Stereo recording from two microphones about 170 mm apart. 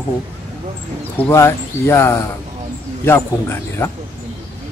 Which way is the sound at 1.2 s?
15° left (ahead or behind).